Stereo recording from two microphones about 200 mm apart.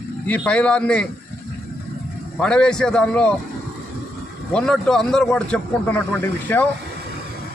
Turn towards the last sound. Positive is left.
turn(degrees=10)  # may be behind; listen again after turning